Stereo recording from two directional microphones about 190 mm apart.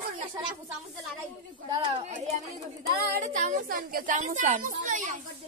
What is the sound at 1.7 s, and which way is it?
Speech, 30° right (ahead or behind).